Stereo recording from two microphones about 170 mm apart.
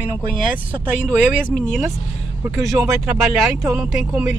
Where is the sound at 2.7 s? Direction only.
15° right (ahead or behind).